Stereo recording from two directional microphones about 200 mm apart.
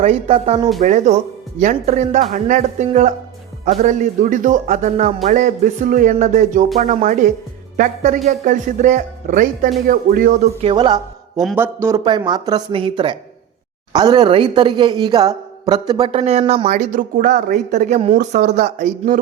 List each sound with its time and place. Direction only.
0.0 s a man's voice: 30° right (ahead or behind)
10.6 s a woman's voice: 25° right (ahead or behind)
11.3 s a woman's voice: 5° right (ahead or behind); by 19.2 s 40° right (ahead or behind)